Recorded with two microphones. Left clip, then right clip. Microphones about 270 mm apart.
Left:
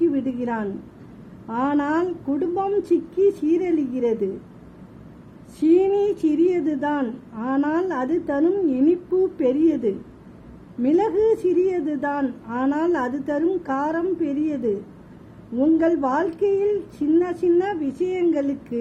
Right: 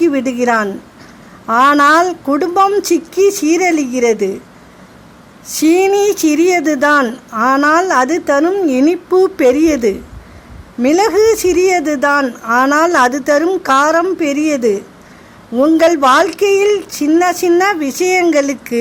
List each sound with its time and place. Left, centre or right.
0.0 s speech: right
5.6 s speech: right
15.9 s speech: right